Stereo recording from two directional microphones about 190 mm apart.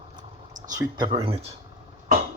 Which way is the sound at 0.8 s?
25° right (ahead or behind).